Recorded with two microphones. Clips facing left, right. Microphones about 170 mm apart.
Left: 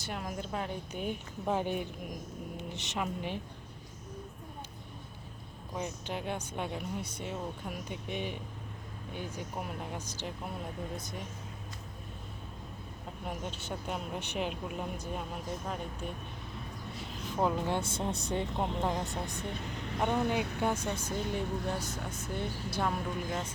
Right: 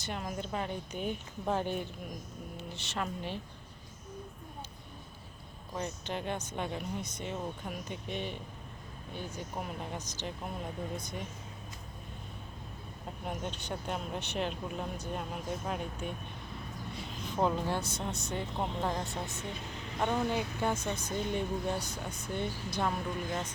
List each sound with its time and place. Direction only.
0.0 s speech: 5° left (ahead or behind)
5.7 s speech: 10° left (ahead or behind)
13.2 s speech: 5° left (ahead or behind)
15.2 s speech: 5° right (ahead or behind)
17.1 s a sound: 5° left (ahead or behind)
17.7 s speech: 25° left (ahead or behind)
18.5 s speech: 10° left (ahead or behind)
20.6 s speech: 10° left (ahead or behind)